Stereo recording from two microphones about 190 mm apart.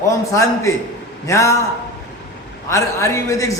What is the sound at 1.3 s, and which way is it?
Speech, 15° left (ahead or behind).